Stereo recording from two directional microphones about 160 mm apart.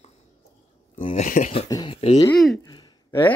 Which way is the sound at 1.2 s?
55° left (ahead or behind).